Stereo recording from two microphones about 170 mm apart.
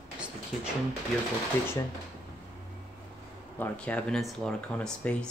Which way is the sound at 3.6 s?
10° left (ahead or behind).